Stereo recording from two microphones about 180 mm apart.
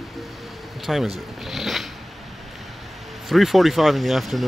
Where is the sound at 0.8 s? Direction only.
Centre (ahead or behind).